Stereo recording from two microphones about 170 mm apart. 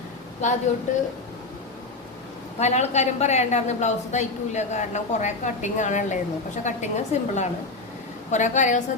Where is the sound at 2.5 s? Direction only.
40° left (ahead or behind).